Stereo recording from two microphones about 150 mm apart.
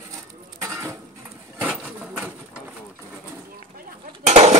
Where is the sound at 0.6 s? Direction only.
20° right (ahead or behind).